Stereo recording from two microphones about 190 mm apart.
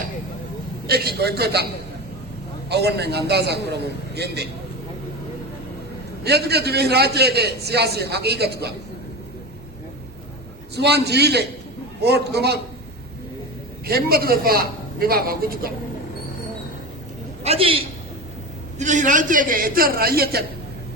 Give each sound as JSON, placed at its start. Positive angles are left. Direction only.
{"t": 0.9, "sound": "a man's voice", "side_deg": -55}
{"t": 2.6, "sound": "a man's voice", "side_deg": -60}
{"t": 6.2, "sound": "a man's voice", "side_deg": -60}
{"t": 10.8, "sound": "a man's voice", "side_deg": -60}
{"t": 13.8, "sound": "speech", "side_deg": -55}
{"t": 17.4, "sound": "a man's voice", "side_deg": -30}
{"t": 18.8, "sound": "speech", "side_deg": -40}